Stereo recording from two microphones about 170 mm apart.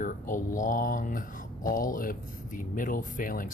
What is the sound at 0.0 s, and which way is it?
Speech, 50° left (ahead or behind).